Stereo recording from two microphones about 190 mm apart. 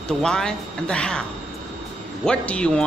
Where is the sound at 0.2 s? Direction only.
5° left (ahead or behind).